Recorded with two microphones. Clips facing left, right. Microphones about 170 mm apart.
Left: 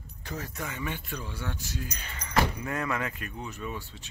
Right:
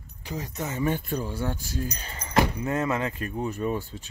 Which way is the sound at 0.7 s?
40° right (ahead or behind).